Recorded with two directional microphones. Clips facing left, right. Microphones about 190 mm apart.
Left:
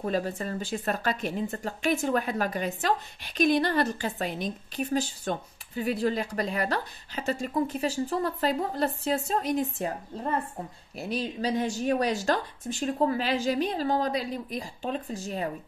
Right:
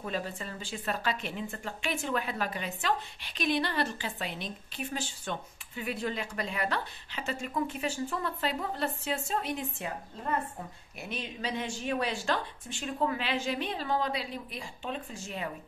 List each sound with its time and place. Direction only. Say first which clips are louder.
0.0 s speech: left 7 dB; 40° left (ahead or behind)
11.0 s speech: left 8 dB; 35° left (ahead or behind)